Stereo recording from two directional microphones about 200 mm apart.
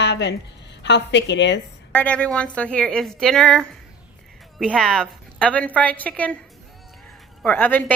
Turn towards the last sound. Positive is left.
turn(degrees=10)  # may be behind; listen again after turning